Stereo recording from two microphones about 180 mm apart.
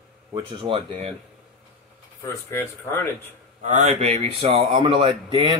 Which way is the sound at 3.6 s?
40° right (ahead or behind).